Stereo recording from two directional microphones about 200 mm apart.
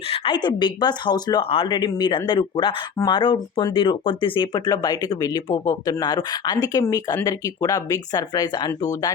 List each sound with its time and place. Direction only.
0.1 s speech: 25° left (ahead or behind)